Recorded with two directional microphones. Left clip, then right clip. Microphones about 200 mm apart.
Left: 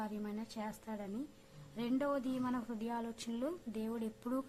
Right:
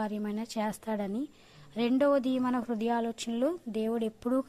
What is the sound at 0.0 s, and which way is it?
A woman's voice, 35° right (ahead or behind).